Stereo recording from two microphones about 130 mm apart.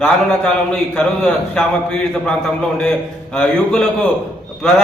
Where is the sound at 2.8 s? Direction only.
5° left (ahead or behind).